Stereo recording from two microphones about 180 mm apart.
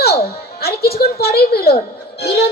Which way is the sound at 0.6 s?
60° left (ahead or behind).